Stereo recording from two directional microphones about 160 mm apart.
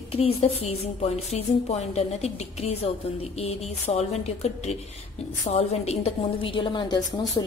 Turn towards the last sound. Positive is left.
turn(degrees=30)  # may be behind; listen again after turning